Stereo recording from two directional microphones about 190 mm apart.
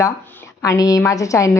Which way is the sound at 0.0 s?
15° left (ahead or behind).